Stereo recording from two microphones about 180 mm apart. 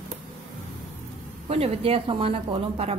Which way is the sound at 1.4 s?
35° right (ahead or behind).